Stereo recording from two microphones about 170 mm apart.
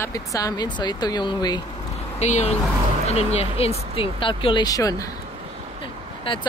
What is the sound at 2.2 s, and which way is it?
Speech, 40° left (ahead or behind).